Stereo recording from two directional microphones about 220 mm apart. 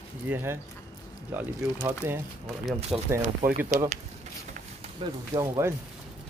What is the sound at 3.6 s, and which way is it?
Speech, 30° right (ahead or behind).